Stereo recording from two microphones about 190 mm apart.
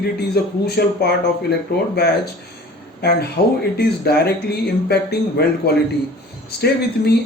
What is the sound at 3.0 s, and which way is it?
Speech, 60° left (ahead or behind).